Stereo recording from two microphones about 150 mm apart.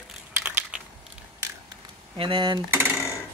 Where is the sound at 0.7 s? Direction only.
10° right (ahead or behind).